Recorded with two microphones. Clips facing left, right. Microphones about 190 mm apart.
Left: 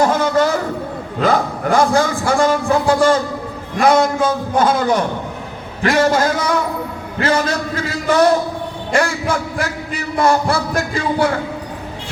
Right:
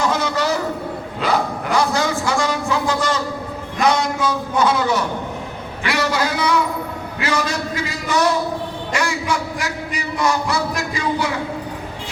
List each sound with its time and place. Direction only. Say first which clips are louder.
0.0 s vehicle: left 5 dB; 50° left (ahead or behind)
1.2 s a man's voice: left 4 dB; 45° left (ahead or behind)